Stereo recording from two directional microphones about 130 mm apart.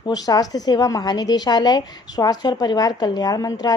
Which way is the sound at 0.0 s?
30° left (ahead or behind).